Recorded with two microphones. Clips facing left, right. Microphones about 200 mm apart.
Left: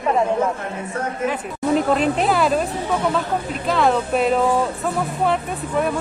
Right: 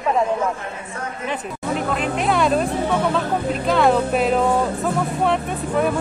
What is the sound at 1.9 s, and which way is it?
Speech, 35° left (ahead or behind).